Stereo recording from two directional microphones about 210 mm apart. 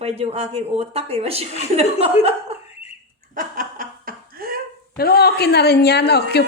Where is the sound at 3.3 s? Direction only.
40° right (ahead or behind).